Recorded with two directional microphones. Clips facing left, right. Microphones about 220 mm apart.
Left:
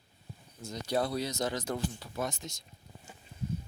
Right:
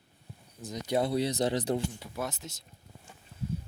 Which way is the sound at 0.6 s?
15° right (ahead or behind).